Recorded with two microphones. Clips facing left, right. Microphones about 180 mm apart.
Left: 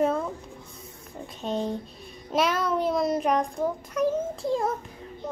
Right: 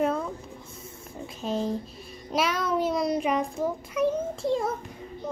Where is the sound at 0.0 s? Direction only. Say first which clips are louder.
Left 2 dB; centre (ahead or behind).